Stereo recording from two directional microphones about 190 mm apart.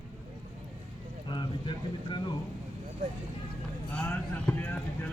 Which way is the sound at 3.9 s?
10° left (ahead or behind).